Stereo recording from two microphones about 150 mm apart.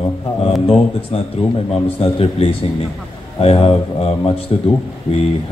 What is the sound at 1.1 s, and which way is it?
A man's voice, 40° left (ahead or behind).